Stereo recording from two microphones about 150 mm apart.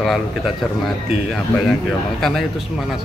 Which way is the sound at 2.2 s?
Centre (ahead or behind).